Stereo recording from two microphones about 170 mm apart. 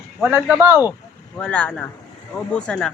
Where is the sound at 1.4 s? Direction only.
5° left (ahead or behind).